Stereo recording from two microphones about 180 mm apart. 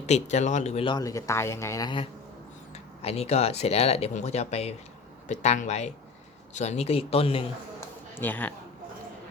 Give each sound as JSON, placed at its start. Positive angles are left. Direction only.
{"t": 0.0, "sound": "speech", "side_deg": 40}
{"t": 2.7, "sound": "speech", "side_deg": 35}
{"t": 7.8, "sound": "a sound", "side_deg": 10}